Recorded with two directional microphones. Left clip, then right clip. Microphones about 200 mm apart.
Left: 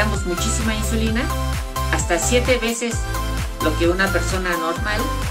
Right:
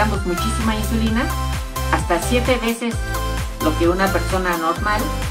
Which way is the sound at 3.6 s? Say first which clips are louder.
Right 1 dB; 15° left (ahead or behind).